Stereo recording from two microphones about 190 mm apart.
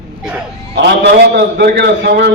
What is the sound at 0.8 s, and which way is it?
A man's voice, 60° right (ahead or behind).